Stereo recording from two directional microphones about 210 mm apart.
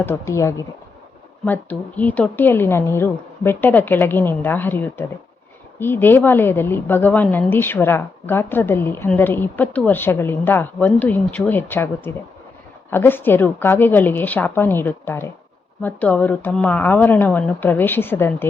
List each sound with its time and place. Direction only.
0.0 s a woman's voice: 10° left (ahead or behind)
2.0 s a woman's voice: 5° left (ahead or behind)